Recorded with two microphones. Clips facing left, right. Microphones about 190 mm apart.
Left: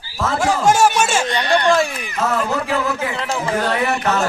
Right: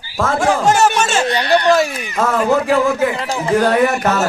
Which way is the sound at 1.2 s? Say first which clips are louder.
Right 3 dB; 10° right (ahead or behind).